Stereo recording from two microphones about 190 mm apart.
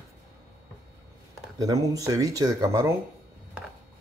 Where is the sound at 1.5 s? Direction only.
20° right (ahead or behind).